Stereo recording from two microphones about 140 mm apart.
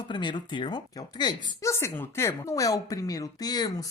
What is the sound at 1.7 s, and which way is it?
A woman's voice, 15° left (ahead or behind).